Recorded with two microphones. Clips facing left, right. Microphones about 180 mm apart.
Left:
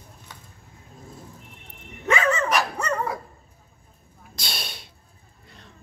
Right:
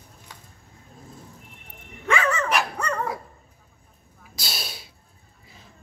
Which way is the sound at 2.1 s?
20° left (ahead or behind).